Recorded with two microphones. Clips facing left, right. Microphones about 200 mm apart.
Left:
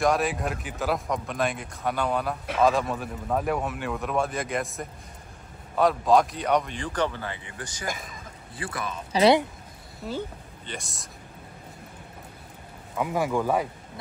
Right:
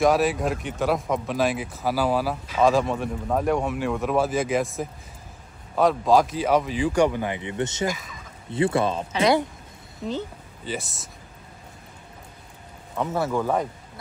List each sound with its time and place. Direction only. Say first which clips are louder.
0.0 s speech: right 4 dB; centre (ahead or behind); by 7.9 s 25° right (ahead or behind)
7.9 s speech: right 3 dB; 50° left (ahead or behind)
8.5 s speech: right 12 dB; 25° right (ahead or behind)
9.1 s speech: left 3 dB; 30° left (ahead or behind)
10.6 s speech: right 7 dB; 5° right (ahead or behind)
12.9 s speech: right 1 dB; 10° left (ahead or behind)